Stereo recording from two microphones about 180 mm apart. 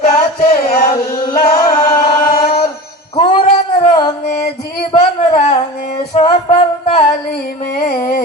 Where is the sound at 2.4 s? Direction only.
30° left (ahead or behind).